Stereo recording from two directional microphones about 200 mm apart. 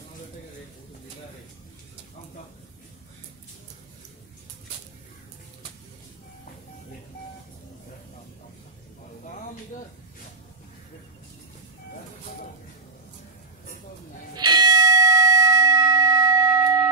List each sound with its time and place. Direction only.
14.3 s church bell: 20° right (ahead or behind)